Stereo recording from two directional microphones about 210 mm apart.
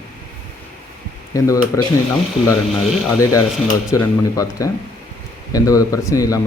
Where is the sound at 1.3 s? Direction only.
15° left (ahead or behind).